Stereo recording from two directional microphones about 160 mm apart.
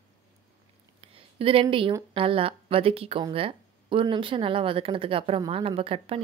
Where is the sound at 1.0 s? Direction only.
35° right (ahead or behind).